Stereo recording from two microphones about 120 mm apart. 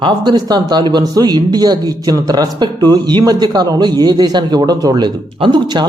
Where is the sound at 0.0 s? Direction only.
35° right (ahead or behind).